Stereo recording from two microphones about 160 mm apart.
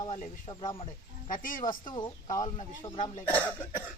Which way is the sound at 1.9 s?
30° left (ahead or behind).